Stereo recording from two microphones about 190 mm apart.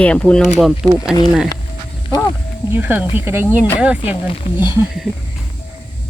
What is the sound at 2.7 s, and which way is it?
Speech, 10° right (ahead or behind).